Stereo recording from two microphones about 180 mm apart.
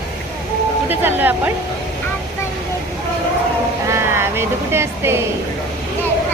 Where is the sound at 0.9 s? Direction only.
10° right (ahead or behind).